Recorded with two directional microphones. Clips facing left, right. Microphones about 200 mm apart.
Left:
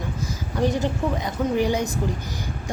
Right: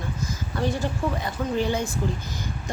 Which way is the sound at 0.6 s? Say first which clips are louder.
Left 4 dB; 20° left (ahead or behind).